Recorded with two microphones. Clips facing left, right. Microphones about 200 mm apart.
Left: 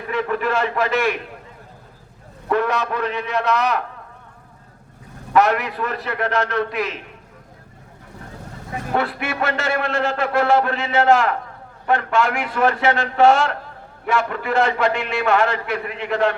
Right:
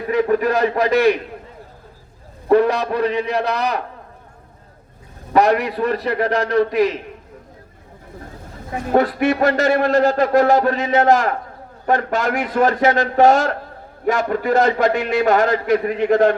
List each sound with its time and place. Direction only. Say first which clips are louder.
0.1 s a man's voice: right 5 dB; 40° right (ahead or behind)
2.5 s a man's voice: right 6 dB; 35° right (ahead or behind)
5.3 s a man's voice: right 2 dB; 35° right (ahead or behind)
8.9 s a man's voice: right 8 dB; 40° right (ahead or behind)